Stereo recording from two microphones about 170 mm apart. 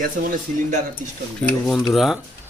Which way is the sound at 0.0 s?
55° right (ahead or behind).